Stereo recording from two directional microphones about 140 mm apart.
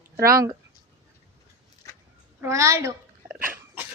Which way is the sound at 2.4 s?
20° right (ahead or behind).